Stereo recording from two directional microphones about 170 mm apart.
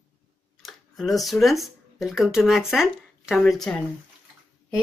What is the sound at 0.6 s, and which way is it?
Speech, centre (ahead or behind).